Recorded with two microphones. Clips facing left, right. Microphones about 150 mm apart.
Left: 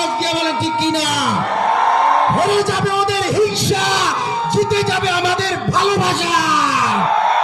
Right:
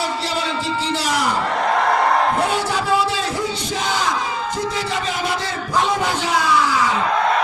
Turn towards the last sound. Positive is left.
turn(degrees=75)  # may be behind; listen again after turning